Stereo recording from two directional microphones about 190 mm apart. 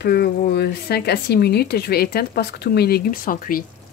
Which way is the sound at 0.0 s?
55° left (ahead or behind).